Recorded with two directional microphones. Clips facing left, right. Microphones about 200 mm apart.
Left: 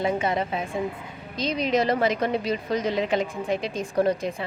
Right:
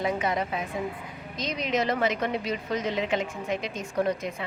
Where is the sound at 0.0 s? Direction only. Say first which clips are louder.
Left 3 dB; 30° left (ahead or behind).